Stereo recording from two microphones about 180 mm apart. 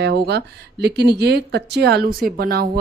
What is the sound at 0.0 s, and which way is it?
Speech, 65° right (ahead or behind).